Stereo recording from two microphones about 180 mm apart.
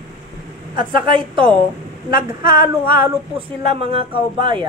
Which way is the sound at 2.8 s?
30° right (ahead or behind).